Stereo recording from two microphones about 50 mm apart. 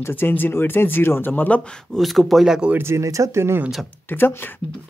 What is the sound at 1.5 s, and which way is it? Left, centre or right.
Speech, centre.